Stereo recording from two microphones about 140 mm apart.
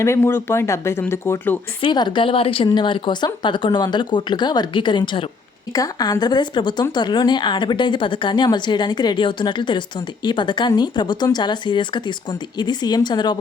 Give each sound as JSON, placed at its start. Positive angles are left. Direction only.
{"t": 0.0, "sound": "speech", "side_deg": 20}
{"t": 1.8, "sound": "speech", "side_deg": 35}